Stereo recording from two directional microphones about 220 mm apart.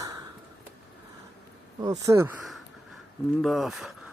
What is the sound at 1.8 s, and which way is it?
Speech, 15° right (ahead or behind).